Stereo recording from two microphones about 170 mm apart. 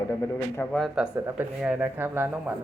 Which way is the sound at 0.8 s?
5° right (ahead or behind).